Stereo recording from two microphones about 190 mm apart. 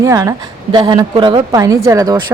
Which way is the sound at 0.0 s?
20° right (ahead or behind).